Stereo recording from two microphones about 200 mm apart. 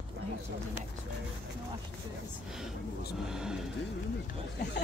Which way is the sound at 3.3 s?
5° right (ahead or behind).